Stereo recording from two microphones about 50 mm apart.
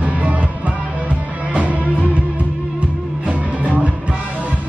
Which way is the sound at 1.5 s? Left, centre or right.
Right.